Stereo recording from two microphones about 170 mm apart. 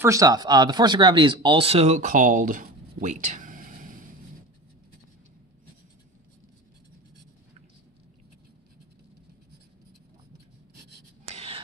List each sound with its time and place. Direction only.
0.0 s speech: 20° right (ahead or behind); by 4.0 s 50° right (ahead or behind)
11.3 s whispering: 35° right (ahead or behind)